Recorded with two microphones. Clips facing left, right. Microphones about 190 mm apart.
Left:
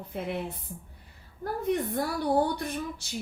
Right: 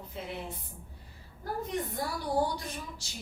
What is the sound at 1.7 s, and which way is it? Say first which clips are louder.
Speech: left 9 dB; 60° left (ahead or behind).